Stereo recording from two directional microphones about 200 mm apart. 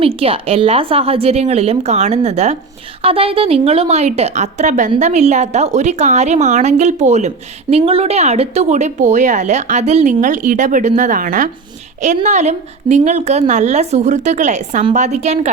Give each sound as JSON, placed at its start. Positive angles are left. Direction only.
{"t": 0.2, "sound": "a woman's voice", "side_deg": -30}